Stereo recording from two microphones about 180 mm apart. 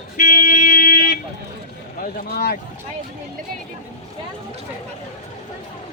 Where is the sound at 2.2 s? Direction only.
60° left (ahead or behind).